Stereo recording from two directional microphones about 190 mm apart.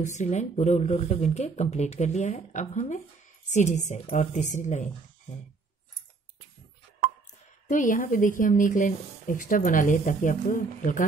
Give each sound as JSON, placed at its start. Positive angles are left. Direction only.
{"t": 0.0, "sound": "speech", "side_deg": 40}
{"t": 7.6, "sound": "a woman's voice", "side_deg": 45}